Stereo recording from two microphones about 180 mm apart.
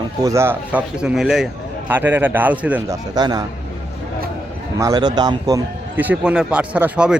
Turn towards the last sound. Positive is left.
turn(degrees=-5)  # may be behind; listen again after turning